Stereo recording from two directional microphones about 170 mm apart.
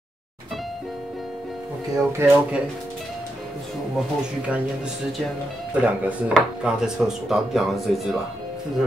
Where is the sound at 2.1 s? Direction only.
15° right (ahead or behind).